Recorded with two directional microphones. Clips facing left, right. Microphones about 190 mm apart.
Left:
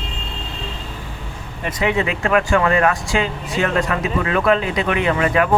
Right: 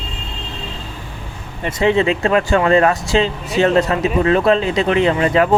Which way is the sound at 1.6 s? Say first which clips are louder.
Right 5 dB; 25° right (ahead or behind).